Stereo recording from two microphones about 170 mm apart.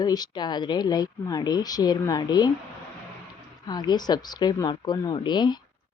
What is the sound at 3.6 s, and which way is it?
Speech, 25° left (ahead or behind).